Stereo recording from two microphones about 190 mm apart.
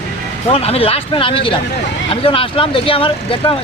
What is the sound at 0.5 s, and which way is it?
Speech, 30° left (ahead or behind).